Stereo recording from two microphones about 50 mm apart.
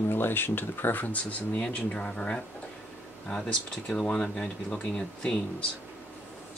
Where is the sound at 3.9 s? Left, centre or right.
Centre.